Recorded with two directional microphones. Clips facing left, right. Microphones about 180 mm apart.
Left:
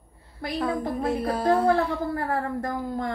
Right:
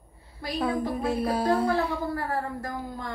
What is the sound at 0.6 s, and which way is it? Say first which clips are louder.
Speech: even; 5° right (ahead or behind).